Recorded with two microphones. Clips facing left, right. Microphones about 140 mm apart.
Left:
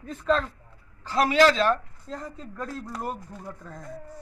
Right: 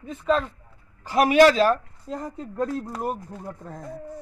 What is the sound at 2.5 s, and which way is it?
A man's voice, 25° right (ahead or behind).